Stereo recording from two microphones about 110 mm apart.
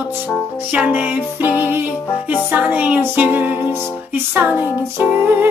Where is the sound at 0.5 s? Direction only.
15° right (ahead or behind).